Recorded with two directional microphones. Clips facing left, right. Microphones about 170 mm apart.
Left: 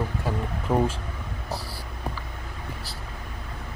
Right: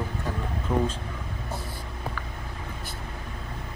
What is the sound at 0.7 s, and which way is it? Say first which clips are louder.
Speech: left 3 dB; 25° left (ahead or behind).